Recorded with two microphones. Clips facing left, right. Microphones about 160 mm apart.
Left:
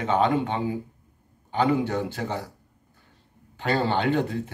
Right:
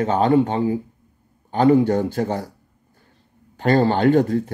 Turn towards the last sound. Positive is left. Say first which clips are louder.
# right 7 dB
turn(degrees=-45)  # may be behind; listen again after turning